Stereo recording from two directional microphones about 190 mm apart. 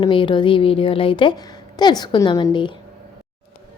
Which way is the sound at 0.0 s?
25° left (ahead or behind).